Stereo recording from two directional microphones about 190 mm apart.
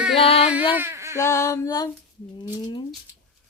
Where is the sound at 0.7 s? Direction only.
15° right (ahead or behind).